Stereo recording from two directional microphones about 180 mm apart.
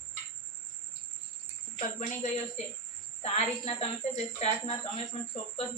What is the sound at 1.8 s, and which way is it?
Speech, 40° left (ahead or behind).